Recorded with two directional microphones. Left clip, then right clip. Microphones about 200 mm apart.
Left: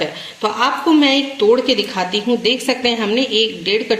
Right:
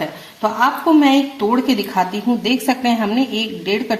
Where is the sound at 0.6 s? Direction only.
45° right (ahead or behind).